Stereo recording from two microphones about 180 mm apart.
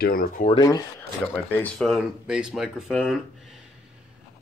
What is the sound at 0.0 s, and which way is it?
Speech, 55° left (ahead or behind).